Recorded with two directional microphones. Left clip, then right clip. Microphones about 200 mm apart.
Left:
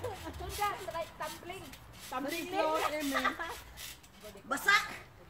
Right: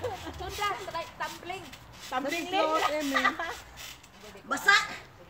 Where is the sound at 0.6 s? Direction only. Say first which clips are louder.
Right 3 dB; 50° right (ahead or behind).